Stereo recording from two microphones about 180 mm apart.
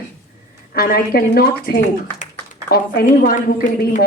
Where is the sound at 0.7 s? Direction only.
55° left (ahead or behind).